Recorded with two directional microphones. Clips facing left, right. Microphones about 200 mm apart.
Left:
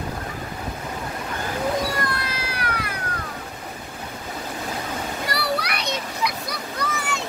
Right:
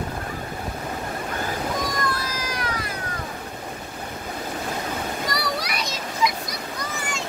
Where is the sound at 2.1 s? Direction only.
65° left (ahead or behind).